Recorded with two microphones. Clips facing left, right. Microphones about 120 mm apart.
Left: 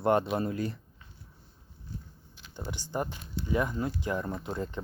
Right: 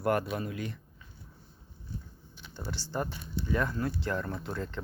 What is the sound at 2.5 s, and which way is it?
Speech, 15° left (ahead or behind).